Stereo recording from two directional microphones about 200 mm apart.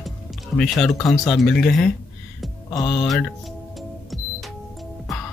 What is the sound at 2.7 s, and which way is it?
Speech, 20° left (ahead or behind).